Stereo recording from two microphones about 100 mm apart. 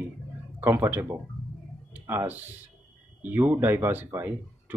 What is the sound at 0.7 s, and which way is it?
Speech, 20° right (ahead or behind).